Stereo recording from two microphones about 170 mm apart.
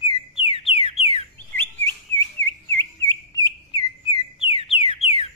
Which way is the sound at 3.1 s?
20° left (ahead or behind).